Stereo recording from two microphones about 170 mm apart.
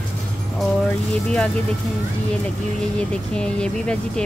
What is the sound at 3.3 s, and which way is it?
Speech, 5° left (ahead or behind).